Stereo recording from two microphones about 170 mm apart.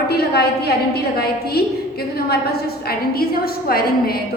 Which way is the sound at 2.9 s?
65° left (ahead or behind).